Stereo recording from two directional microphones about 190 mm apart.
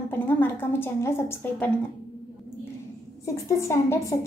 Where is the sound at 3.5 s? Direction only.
15° left (ahead or behind).